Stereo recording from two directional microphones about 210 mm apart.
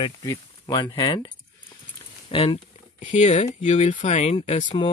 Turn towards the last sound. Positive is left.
turn(degrees=25)  # may be behind; listen again after turning